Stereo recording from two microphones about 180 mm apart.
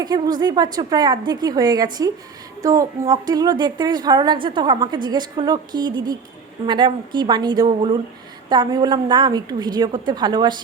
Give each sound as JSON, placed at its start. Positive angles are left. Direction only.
{"t": 0.0, "sound": "a woman's voice", "side_deg": -20}